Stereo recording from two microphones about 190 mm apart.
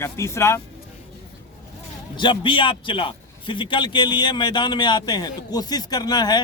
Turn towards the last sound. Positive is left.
turn(degrees=20)  # may be behind; listen again after turning